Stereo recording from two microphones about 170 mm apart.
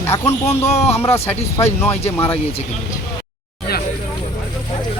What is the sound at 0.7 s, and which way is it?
Speech, 35° left (ahead or behind).